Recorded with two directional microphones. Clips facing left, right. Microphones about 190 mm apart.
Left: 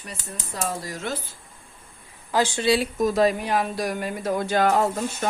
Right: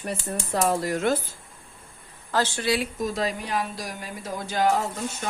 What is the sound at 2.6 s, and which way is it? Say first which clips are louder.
Speech: left 6 dB; 25° left (ahead or behind).